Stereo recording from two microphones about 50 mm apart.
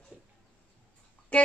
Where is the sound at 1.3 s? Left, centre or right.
Left.